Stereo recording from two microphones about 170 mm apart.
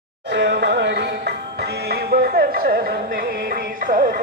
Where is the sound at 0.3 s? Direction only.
85° right.